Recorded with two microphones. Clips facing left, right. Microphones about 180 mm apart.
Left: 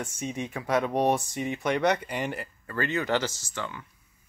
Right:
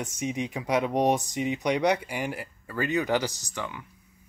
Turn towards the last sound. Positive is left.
turn(degrees=-15)  # may be behind; listen again after turning